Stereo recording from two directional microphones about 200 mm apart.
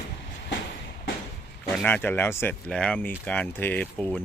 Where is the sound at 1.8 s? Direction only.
10° left (ahead or behind).